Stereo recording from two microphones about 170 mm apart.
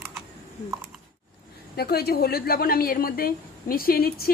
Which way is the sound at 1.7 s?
65° left (ahead or behind).